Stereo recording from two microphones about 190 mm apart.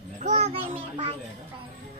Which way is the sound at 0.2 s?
35° right (ahead or behind).